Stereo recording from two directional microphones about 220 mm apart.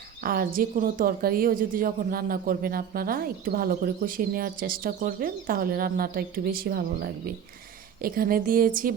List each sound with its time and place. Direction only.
0.2 s a woman's voice: 40° right (ahead or behind)